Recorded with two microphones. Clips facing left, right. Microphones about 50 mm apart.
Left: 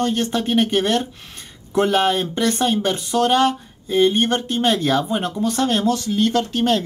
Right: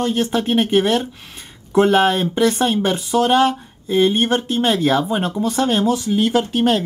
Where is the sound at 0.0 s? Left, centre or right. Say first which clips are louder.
Right 2 dB; centre.